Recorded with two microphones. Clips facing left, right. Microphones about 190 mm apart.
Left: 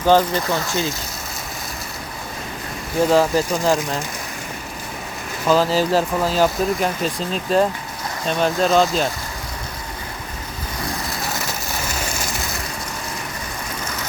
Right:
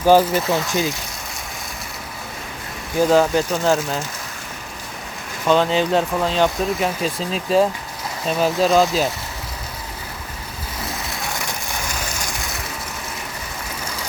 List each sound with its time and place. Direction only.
0.0 s speech: 10° right (ahead or behind)
0.7 s speech: 15° right (ahead or behind)
3.0 s speech: centre (ahead or behind)
5.5 s speech: 5° left (ahead or behind)
10.8 s a sound: centre (ahead or behind)